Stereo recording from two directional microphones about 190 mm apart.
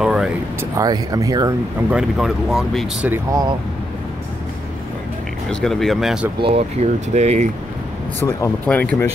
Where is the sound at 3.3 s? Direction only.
20° right (ahead or behind).